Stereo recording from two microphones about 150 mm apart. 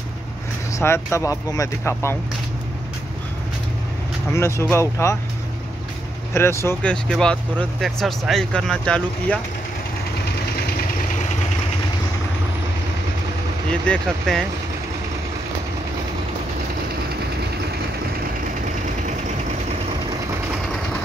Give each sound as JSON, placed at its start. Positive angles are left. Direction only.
{"t": 0.7, "sound": "speech", "side_deg": 20}
{"t": 4.3, "sound": "speech", "side_deg": 20}
{"t": 6.3, "sound": "speech", "side_deg": 15}
{"t": 13.7, "sound": "speech", "side_deg": 5}